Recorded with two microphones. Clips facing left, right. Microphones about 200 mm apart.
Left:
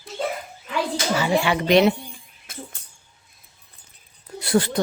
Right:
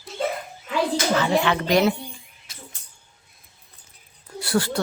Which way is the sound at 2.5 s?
55° left (ahead or behind).